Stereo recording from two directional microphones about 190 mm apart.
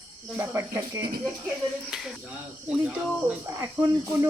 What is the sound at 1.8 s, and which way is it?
Speech, centre (ahead or behind).